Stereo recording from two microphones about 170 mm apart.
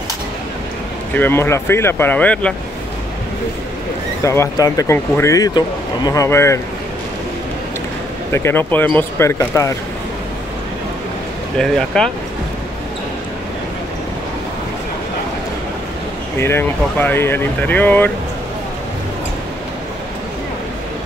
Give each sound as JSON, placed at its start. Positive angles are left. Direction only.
{"t": 1.1, "sound": "speech", "side_deg": 10}
{"t": 4.2, "sound": "speech", "side_deg": 15}
{"t": 8.3, "sound": "speech", "side_deg": 15}
{"t": 11.5, "sound": "speech", "side_deg": 5}
{"t": 16.3, "sound": "speech", "side_deg": 15}